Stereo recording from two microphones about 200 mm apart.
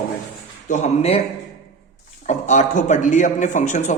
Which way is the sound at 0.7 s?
35° left (ahead or behind).